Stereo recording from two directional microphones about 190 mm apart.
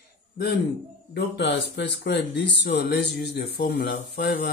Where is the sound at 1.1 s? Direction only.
65° left (ahead or behind).